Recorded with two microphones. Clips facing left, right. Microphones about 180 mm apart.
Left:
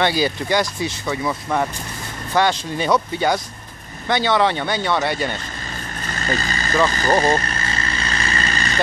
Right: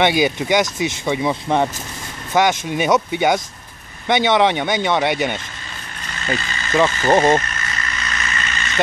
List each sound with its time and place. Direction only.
0.0 s speech: 20° right (ahead or behind)
6.0 s vehicle: 40° left (ahead or behind)
7.1 s speech: 25° right (ahead or behind)
7.3 s vehicle: 35° left (ahead or behind)